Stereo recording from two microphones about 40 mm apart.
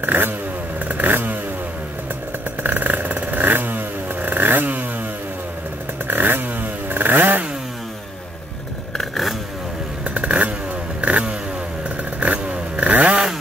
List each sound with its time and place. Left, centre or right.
0.0 s motorcycle: right
0.8 s vehicle: right
2.6 s vehicle: right
6.0 s motorcycle: right
8.9 s vehicle: centre
10.0 s vehicle: right